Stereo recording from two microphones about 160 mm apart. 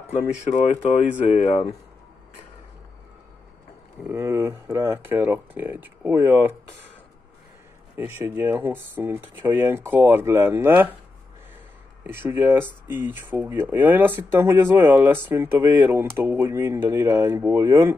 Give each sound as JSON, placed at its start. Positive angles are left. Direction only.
{"t": 0.5, "sound": "speech", "side_deg": 45}
{"t": 4.0, "sound": "speech", "side_deg": -15}
{"t": 7.9, "sound": "speech", "side_deg": -15}
{"t": 12.0, "sound": "speech", "side_deg": -15}